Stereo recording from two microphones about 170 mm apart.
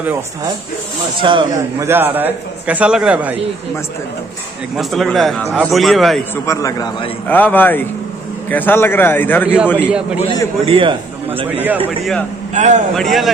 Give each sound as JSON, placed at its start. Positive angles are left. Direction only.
{"t": 1.2, "sound": "a man's voice", "side_deg": -30}
{"t": 1.8, "sound": "a man's voice", "side_deg": -15}
{"t": 4.7, "sound": "a man's voice", "side_deg": 0}
{"t": 6.3, "sound": "a man's voice", "side_deg": 15}
{"t": 9.8, "sound": "a man's voice", "side_deg": -5}
{"t": 10.6, "sound": "a man's voice", "side_deg": -30}
{"t": 11.5, "sound": "a man's voice", "side_deg": -10}
{"t": 12.0, "sound": "a man's voice", "side_deg": 5}
{"t": 12.5, "sound": "a man's voice", "side_deg": -45}
{"t": 12.9, "sound": "a man's voice", "side_deg": 0}